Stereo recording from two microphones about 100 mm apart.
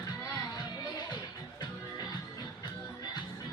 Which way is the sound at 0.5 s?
40° left (ahead or behind).